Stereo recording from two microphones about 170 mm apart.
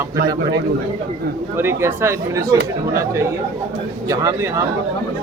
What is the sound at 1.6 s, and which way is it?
Speech, 15° right (ahead or behind).